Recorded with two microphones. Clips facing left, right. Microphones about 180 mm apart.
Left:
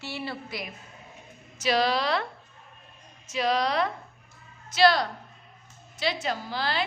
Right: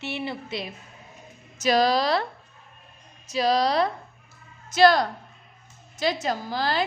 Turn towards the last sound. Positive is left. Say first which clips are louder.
# right 4 dB
turn(degrees=-40)  # may be behind; listen again after turning